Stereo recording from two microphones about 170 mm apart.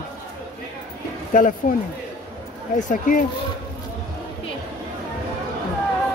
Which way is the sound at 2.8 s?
50° left (ahead or behind).